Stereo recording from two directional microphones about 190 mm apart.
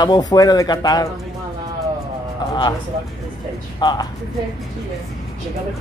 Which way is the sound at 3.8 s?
20° left (ahead or behind).